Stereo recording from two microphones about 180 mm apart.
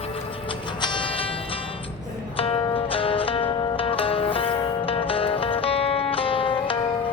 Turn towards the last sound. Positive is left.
turn(degrees=30)  # may be behind; listen again after turning